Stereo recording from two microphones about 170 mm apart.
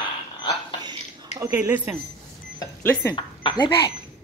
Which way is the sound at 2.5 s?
10° left (ahead or behind).